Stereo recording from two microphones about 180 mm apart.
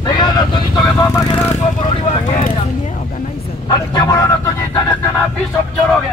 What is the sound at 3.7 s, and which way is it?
Vehicle, 20° left (ahead or behind).